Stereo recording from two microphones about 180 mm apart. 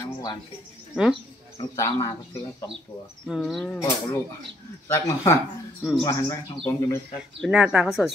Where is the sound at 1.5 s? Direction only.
20° left (ahead or behind).